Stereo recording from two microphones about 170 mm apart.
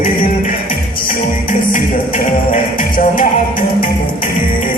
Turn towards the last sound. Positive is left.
turn(degrees=55)  # may be behind; listen again after turning